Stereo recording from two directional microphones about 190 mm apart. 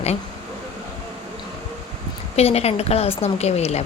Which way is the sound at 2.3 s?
35° left (ahead or behind).